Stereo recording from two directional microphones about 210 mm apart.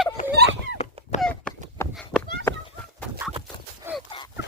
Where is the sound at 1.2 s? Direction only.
5° left (ahead or behind).